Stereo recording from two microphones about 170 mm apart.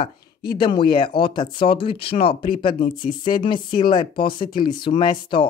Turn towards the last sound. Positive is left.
turn(degrees=30)  # may be behind; listen again after turning